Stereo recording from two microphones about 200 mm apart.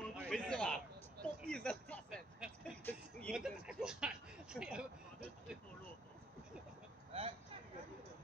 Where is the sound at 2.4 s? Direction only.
5° right (ahead or behind).